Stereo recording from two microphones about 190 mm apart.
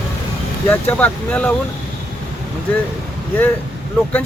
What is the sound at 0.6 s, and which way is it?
Speech, 10° left (ahead or behind).